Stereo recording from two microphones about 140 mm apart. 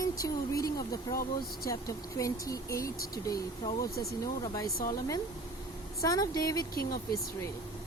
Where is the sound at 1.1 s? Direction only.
90° left.